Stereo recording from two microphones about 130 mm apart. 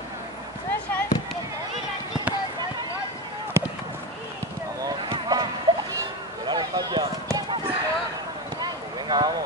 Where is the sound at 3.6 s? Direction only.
20° right (ahead or behind).